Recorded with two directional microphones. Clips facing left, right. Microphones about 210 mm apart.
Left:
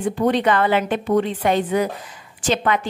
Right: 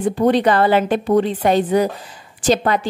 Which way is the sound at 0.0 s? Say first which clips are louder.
Right 3 dB; 35° right (ahead or behind).